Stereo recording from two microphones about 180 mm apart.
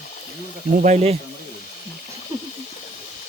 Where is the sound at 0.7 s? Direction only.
40° right (ahead or behind).